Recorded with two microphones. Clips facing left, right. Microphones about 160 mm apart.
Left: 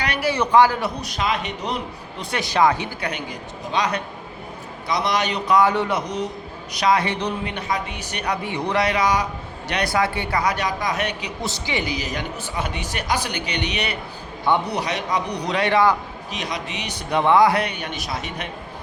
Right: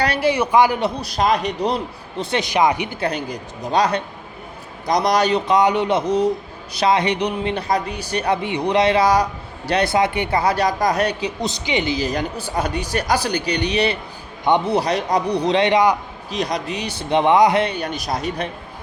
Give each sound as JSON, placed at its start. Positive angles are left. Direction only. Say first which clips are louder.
{"t": 0.0, "sound": "a sound", "louder": "right 5 dB", "side_deg": -30}
{"t": 0.3, "sound": "speech", "louder": "even", "side_deg": -15}
{"t": 1.0, "sound": "a woman's voice", "louder": "right 6 dB", "side_deg": -40}
{"t": 2.4, "sound": "speech", "louder": "even", "side_deg": -15}
{"t": 3.0, "sound": "a woman's voice", "louder": "right 5 dB", "side_deg": -35}
{"t": 5.5, "sound": "speech", "louder": "right 2 dB", "side_deg": -20}
{"t": 7.4, "sound": "a woman's voice", "louder": "right 5 dB", "side_deg": -35}
{"t": 11.4, "sound": "a woman's voice", "louder": "right 3 dB", "side_deg": -20}
{"t": 14.4, "sound": "speech", "louder": "right 4 dB", "side_deg": -20}
{"t": 14.8, "sound": "speech", "louder": "right 5 dB", "side_deg": -35}
{"t": 16.3, "sound": "a woman's voice", "louder": "right 6 dB", "side_deg": -35}